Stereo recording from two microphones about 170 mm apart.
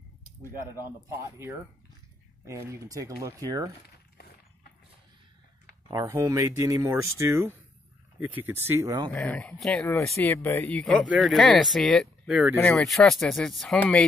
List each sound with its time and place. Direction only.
2.4 s speech: 15° right (ahead or behind)
5.9 s speech: 20° right (ahead or behind)
9.1 s speech: 5° left (ahead or behind)
12.5 s speech: 5° left (ahead or behind)